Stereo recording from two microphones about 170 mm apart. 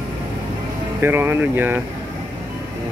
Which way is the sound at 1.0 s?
15° right (ahead or behind).